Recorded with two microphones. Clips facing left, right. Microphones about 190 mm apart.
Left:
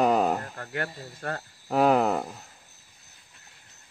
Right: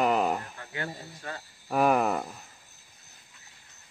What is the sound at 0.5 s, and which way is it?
Speech, 55° left (ahead or behind).